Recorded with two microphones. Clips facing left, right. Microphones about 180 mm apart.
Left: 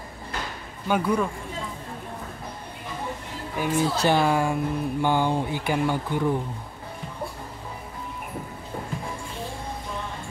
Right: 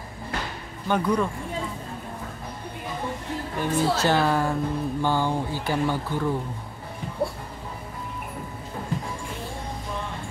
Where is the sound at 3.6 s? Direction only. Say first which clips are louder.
Even; 10° left (ahead or behind).